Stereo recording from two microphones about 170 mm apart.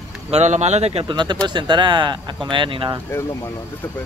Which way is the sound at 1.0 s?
25° right (ahead or behind).